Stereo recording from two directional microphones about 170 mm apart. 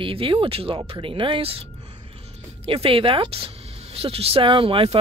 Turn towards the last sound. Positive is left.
turn(degrees=-35)  # may be behind; listen again after turning